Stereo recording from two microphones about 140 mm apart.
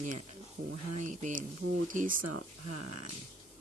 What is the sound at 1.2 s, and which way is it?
Speech, 70° right (ahead or behind).